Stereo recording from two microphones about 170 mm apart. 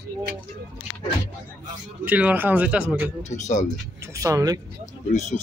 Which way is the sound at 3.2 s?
45° left (ahead or behind).